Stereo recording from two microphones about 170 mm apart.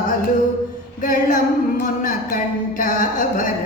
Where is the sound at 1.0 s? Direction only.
50° left (ahead or behind).